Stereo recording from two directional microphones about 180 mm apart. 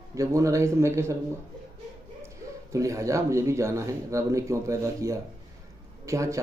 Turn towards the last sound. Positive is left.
turn(degrees=-15)  # may be behind; listen again after turning